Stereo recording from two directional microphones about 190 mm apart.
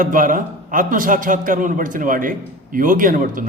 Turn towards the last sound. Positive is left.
turn(degrees=-45)  # may be behind; listen again after turning